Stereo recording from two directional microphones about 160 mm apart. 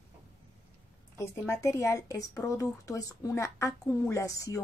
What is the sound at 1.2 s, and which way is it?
A woman's voice, 20° left (ahead or behind).